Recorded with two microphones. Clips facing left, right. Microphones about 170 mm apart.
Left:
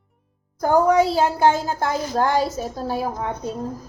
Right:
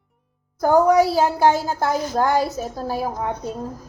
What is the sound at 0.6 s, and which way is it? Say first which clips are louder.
A woman's voice: right 1 dB; 5° right (ahead or behind).